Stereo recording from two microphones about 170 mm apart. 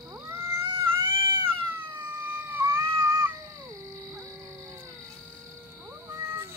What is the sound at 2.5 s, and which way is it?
Cat, 15° right (ahead or behind).